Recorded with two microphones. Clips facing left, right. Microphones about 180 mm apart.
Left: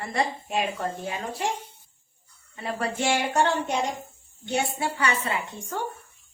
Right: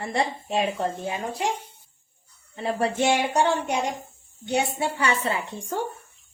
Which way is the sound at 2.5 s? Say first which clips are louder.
Right 4 dB; 30° right (ahead or behind).